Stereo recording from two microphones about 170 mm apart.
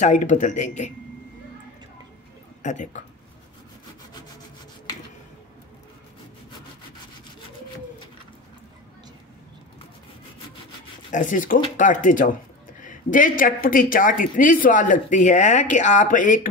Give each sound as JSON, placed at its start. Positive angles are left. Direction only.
{"t": 0.0, "sound": "speech", "side_deg": 45}
{"t": 2.6, "sound": "speech", "side_deg": 45}
{"t": 11.1, "sound": "speech", "side_deg": 50}